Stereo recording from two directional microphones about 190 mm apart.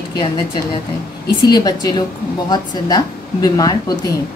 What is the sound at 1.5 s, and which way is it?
Speech, 20° left (ahead or behind).